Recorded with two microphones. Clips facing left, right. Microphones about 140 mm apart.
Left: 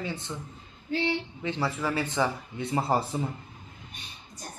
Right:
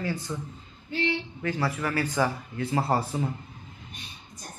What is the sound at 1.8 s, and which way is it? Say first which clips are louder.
Speech: right 1 dB; 20° left (ahead or behind).